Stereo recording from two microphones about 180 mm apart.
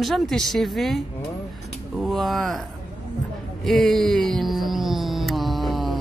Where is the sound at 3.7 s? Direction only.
Centre (ahead or behind).